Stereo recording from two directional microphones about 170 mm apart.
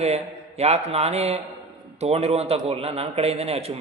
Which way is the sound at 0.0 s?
40° right (ahead or behind).